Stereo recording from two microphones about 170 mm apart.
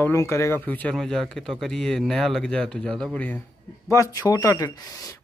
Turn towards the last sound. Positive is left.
turn(degrees=20)  # may be behind; listen again after turning